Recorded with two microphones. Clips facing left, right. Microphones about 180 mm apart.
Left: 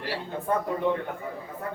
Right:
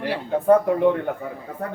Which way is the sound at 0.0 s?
55° right (ahead or behind).